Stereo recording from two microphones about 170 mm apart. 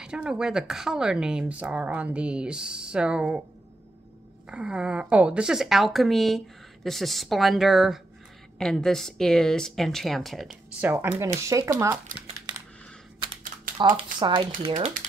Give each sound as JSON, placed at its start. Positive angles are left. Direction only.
{"t": 0.0, "sound": "a woman's voice", "side_deg": -5}
{"t": 4.5, "sound": "a woman's voice", "side_deg": -5}
{"t": 13.8, "sound": "speech", "side_deg": -25}